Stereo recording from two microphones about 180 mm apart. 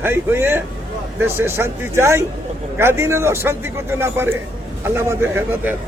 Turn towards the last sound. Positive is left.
turn(degrees=-10)  # may be behind; listen again after turning